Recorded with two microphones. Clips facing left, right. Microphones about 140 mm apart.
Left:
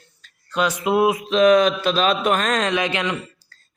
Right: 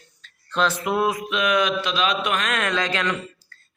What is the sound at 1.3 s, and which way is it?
Speech, 40° left (ahead or behind).